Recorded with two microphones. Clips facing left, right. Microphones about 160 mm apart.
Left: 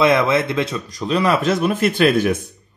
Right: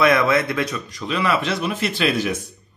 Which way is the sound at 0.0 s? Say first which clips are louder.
Left 2 dB; 25° left (ahead or behind).